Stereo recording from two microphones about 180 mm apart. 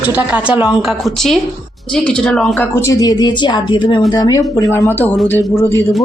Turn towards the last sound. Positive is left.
turn(degrees=15)  # may be behind; listen again after turning